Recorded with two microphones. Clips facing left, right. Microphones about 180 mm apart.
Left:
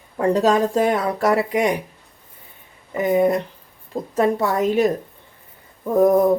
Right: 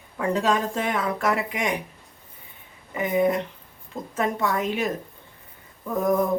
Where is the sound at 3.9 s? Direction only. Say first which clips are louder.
Left 7 dB; 35° left (ahead or behind).